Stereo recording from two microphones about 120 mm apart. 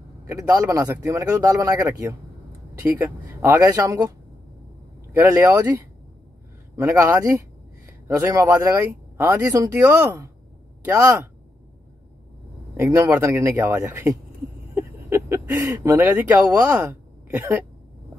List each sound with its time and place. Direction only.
0.3 s speech: 25° right (ahead or behind)
5.1 s speech: 20° right (ahead or behind)
6.8 s speech: 20° right (ahead or behind)
12.7 s speech: 25° right (ahead or behind)